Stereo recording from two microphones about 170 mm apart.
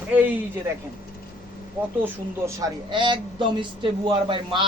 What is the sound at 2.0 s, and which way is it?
Speech, 15° right (ahead or behind).